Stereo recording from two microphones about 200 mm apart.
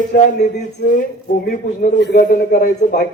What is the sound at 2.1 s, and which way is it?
Speech, 40° left (ahead or behind).